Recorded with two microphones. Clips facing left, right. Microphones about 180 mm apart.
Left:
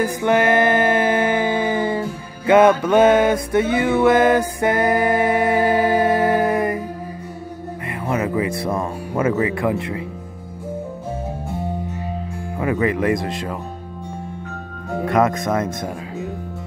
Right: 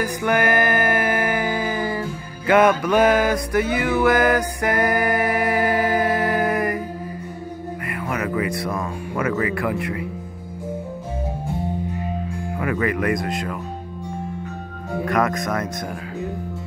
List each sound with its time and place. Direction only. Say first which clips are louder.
0.0 s music: left 3 dB; 25° left (ahead or behind)
7.9 s speech: left 4 dB; 25° left (ahead or behind)
12.5 s speech: left 3 dB; 25° left (ahead or behind)
15.0 s speech: left 4 dB; 25° left (ahead or behind)